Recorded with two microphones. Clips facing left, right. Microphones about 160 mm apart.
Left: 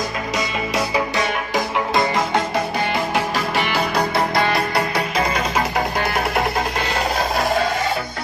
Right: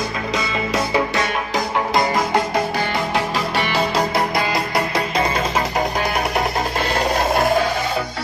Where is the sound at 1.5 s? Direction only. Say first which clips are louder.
Right 1 dB; 20° left (ahead or behind).